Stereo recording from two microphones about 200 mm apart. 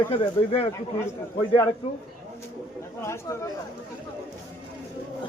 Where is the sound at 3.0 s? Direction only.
15° left (ahead or behind).